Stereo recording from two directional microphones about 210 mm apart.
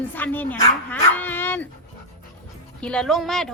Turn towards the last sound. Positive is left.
turn(degrees=0)  # may be behind; listen again after turning